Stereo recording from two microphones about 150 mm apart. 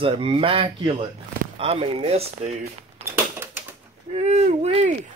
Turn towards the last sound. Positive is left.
turn(degrees=-45)  # may be behind; listen again after turning